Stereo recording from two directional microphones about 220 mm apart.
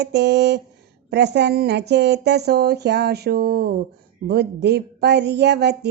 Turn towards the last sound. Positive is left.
turn(degrees=-50)  # may be behind; listen again after turning